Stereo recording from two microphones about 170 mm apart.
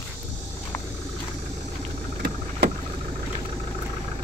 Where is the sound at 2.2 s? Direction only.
60° right (ahead or behind).